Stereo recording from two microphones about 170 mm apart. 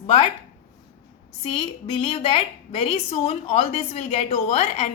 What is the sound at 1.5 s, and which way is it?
A woman's voice, 35° left (ahead or behind).